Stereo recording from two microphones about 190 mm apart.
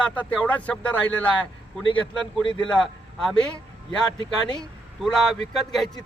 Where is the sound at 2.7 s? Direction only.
5° left (ahead or behind).